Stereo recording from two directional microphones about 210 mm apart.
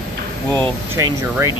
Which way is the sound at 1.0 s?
15° right (ahead or behind).